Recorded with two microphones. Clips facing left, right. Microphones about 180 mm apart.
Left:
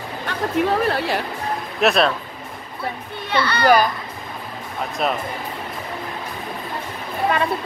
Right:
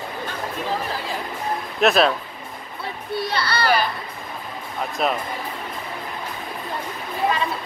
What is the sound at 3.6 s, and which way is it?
Speech, 45° left (ahead or behind).